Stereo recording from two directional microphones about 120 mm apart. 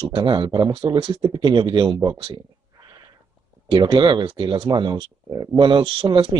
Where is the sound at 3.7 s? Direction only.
40° right (ahead or behind).